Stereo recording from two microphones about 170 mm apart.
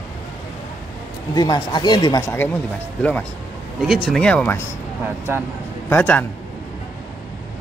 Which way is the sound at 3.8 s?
Centre (ahead or behind).